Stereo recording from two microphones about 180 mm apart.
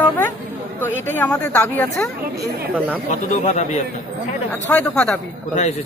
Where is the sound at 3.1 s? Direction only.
40° left (ahead or behind).